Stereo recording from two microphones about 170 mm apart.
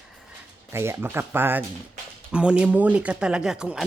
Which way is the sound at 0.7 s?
15° right (ahead or behind).